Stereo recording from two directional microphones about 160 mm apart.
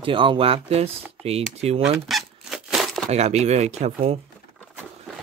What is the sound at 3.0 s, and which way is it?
Speech, 45° right (ahead or behind).